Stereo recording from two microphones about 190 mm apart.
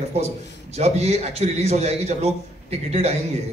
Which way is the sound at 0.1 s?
35° right (ahead or behind).